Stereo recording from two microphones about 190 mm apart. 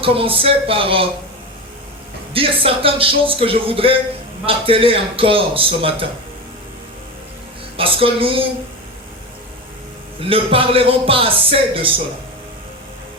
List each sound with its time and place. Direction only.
0.0 s a man's voice: 30° right (ahead or behind)
2.3 s a man's voice: 30° right (ahead or behind)
7.8 s a man's voice: 30° right (ahead or behind)
10.2 s a man's voice: 30° right (ahead or behind)